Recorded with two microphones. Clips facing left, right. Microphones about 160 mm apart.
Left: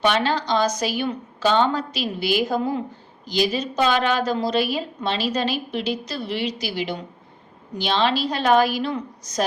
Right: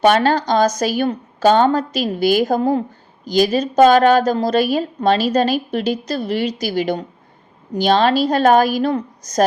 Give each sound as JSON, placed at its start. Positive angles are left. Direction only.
{"t": 0.0, "sound": "a woman's voice", "side_deg": -45}